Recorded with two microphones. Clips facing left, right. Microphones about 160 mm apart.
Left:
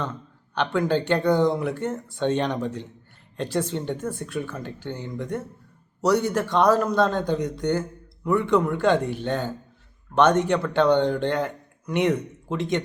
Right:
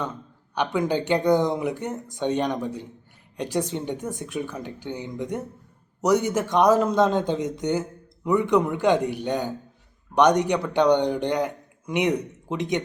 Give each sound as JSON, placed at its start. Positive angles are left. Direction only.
{"t": 0.5, "sound": "a man's voice", "side_deg": -15}